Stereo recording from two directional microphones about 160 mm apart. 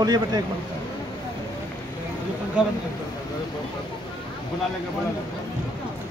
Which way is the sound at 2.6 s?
5° right (ahead or behind).